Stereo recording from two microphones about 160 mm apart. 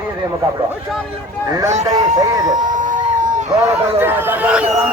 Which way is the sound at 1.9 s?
20° right (ahead or behind).